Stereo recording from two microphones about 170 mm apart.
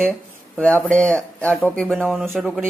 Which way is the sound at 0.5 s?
5° left (ahead or behind).